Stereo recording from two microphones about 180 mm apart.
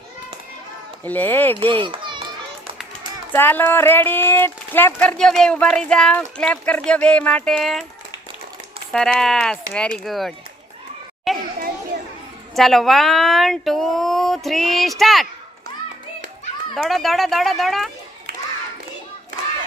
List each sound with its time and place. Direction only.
1.0 s speech: 10° left (ahead or behind)
1.7 s children playing: 25° right (ahead or behind)
3.3 s speech: 10° left (ahead or behind)
8.9 s speech: 5° left (ahead or behind)
11.3 s children playing: centre (ahead or behind)
12.5 s speech: centre (ahead or behind)
16.7 s speech: centre (ahead or behind)